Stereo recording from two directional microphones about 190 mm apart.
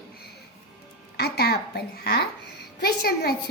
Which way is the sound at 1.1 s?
55° left (ahead or behind).